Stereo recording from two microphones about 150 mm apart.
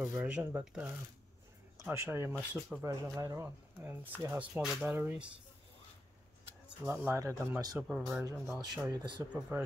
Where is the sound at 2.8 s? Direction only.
20° right (ahead or behind); by 5.0 s 5° right (ahead or behind).